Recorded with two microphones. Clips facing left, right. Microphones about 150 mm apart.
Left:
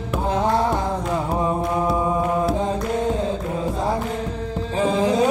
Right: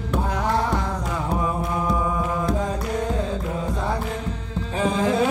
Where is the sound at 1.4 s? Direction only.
25° left (ahead or behind).